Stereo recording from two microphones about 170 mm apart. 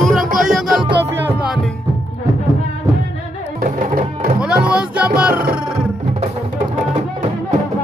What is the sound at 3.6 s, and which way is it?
Music, 45° right (ahead or behind).